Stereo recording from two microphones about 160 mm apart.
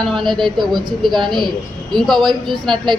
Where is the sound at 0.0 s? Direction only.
Centre (ahead or behind).